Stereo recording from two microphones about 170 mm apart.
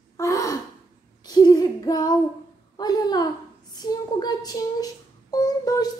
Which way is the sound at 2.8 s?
25° left (ahead or behind).